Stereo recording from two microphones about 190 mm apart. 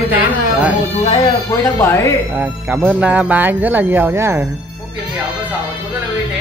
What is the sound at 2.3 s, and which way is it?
Speech, 10° right (ahead or behind).